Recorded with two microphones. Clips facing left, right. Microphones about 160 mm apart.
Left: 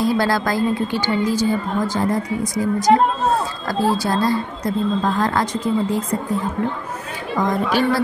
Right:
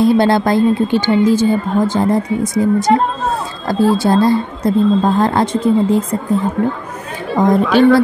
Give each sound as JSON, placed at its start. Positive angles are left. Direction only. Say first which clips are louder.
{"t": 0.0, "sound": "a woman's voice", "louder": "right 7 dB", "side_deg": -25}
{"t": 7.3, "sound": "a woman's voice", "louder": "right 8 dB", "side_deg": -25}